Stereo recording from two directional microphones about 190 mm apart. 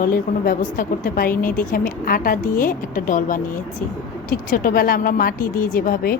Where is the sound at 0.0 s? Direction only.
50° left (ahead or behind).